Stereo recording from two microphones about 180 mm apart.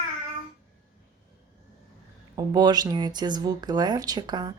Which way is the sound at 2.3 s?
20° right (ahead or behind).